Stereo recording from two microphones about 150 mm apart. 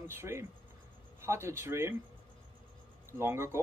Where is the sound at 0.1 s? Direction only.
15° right (ahead or behind).